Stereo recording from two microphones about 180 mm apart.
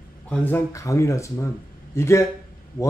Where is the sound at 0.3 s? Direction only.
10° left (ahead or behind).